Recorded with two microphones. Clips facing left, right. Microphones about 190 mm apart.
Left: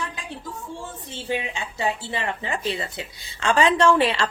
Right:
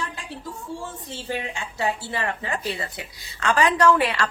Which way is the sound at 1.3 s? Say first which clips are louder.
Right 1 dB; 20° left (ahead or behind).